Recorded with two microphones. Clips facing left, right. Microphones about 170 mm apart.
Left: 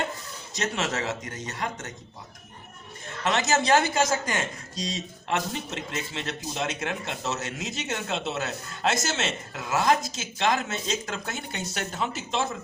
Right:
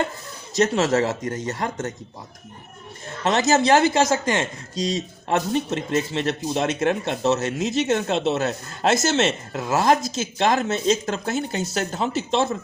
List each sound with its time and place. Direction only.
0.5 s speech: 35° right (ahead or behind)
3.2 s speech: 35° right (ahead or behind)
5.9 s speech: 35° right (ahead or behind)